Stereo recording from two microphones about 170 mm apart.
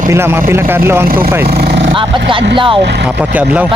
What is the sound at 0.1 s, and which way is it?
Speech, 15° right (ahead or behind).